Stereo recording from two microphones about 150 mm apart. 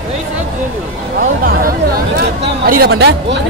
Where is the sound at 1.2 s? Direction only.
70° right (ahead or behind); by 3.2 s 90° right.